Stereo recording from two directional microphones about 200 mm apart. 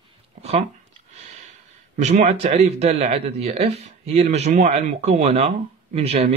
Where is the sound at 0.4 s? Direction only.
30° right (ahead or behind).